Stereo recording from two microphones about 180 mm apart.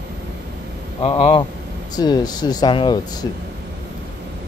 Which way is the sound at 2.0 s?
20° left (ahead or behind).